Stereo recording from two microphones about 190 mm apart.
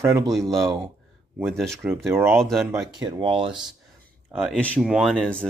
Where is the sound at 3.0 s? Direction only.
25° right (ahead or behind).